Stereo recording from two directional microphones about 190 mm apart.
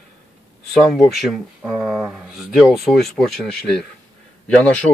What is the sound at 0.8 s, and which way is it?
Speech, centre (ahead or behind).